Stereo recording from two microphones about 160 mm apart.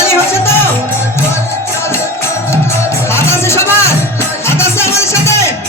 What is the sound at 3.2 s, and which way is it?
Music, 15° left (ahead or behind).